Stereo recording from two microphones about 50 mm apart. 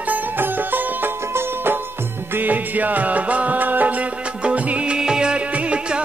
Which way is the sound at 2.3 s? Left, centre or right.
Right.